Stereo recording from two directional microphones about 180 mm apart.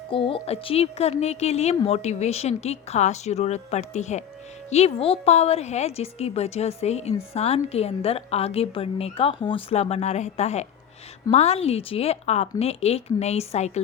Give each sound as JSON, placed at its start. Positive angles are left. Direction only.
{"t": 0.1, "sound": "a woman's voice", "side_deg": 30}